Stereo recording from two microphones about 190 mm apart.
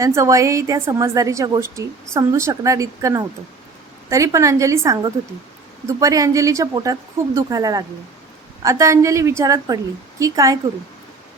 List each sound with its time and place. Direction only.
0.0 s a woman's voice: 15° right (ahead or behind)